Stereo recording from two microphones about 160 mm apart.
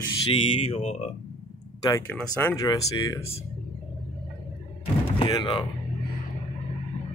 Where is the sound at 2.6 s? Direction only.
20° left (ahead or behind).